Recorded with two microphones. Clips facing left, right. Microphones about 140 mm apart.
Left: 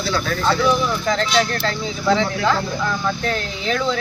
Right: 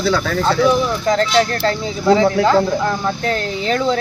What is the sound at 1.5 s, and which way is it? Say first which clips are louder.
Speech: right 4 dB; 35° right (ahead or behind).